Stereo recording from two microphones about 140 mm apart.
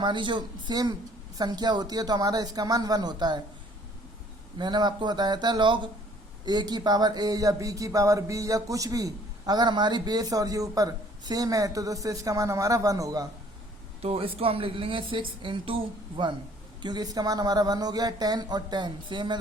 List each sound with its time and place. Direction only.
0.0 s a woman's voice: 35° right (ahead or behind)
4.5 s a woman's voice: 30° right (ahead or behind)
14.0 s a woman's voice: 45° right (ahead or behind)